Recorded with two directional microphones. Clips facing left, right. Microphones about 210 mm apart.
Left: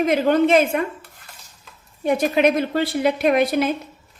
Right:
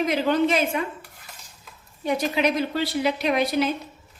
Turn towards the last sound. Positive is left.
turn(degrees=50)  # may be behind; listen again after turning